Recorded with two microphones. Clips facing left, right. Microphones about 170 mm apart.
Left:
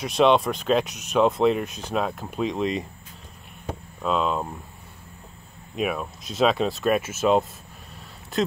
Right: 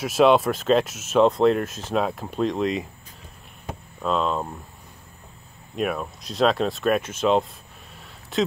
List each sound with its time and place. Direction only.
0.0 s speech: 5° right (ahead or behind)
4.0 s speech: 5° left (ahead or behind)
5.8 s speech: centre (ahead or behind)